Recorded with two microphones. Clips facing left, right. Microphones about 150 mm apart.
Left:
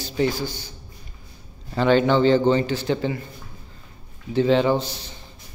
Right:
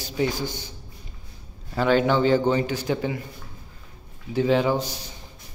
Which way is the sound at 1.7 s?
5° right (ahead or behind).